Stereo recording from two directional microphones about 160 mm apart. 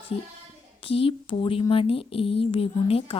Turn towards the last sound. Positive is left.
turn(degrees=35)  # may be behind; listen again after turning